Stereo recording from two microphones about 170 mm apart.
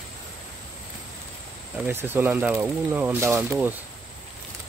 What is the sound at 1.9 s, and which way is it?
Speech, 10° right (ahead or behind).